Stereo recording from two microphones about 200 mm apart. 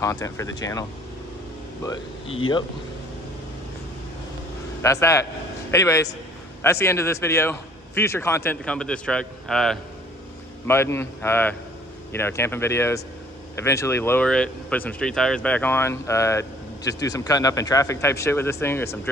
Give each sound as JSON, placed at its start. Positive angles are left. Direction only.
{"t": 0.0, "sound": "speech", "side_deg": 15}
{"t": 1.9, "sound": "speech", "side_deg": 25}
{"t": 4.8, "sound": "speech", "side_deg": 15}